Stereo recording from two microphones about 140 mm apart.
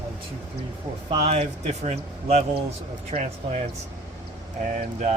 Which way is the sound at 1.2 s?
45° right (ahead or behind).